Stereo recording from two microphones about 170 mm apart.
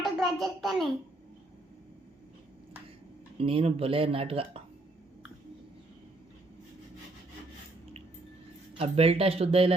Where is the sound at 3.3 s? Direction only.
35° right (ahead or behind).